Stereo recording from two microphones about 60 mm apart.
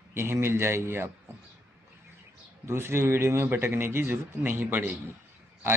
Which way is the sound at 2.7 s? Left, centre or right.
Right.